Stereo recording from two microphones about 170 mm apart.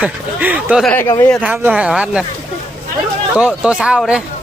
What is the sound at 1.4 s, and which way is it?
Speech, 10° right (ahead or behind).